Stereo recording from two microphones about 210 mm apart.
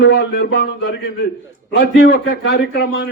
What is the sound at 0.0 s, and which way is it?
Speech, 50° left (ahead or behind).